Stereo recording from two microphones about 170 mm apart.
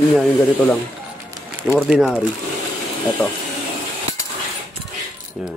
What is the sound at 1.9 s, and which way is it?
Speech, centre (ahead or behind).